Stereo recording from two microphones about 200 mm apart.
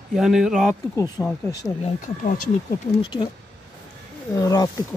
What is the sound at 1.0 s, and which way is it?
Speech, 15° left (ahead or behind).